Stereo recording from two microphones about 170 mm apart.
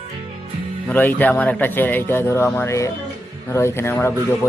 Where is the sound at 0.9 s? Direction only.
10° left (ahead or behind).